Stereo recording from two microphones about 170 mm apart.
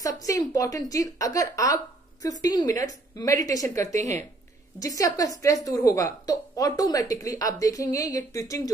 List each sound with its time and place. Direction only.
0.0 s speech: 20° left (ahead or behind)
4.0 s speech: 45° right (ahead or behind)
4.7 s speech: 20° left (ahead or behind)